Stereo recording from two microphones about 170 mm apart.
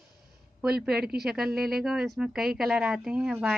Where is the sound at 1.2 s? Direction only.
Centre (ahead or behind).